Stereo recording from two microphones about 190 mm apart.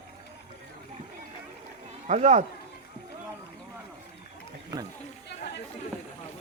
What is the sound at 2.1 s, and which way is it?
Speech, 35° right (ahead or behind).